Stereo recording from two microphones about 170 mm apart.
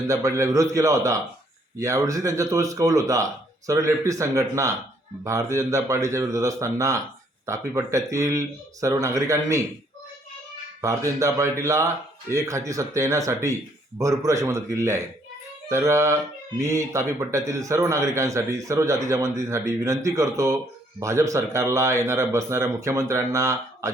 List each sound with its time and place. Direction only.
0.1 s a man's voice: 15° right (ahead or behind)
10.8 s a man's voice: 15° right (ahead or behind)